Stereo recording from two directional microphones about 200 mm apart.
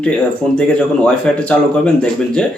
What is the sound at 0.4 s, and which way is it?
Speech, centre (ahead or behind).